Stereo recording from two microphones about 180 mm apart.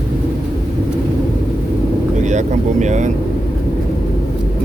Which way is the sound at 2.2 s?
40° right (ahead or behind).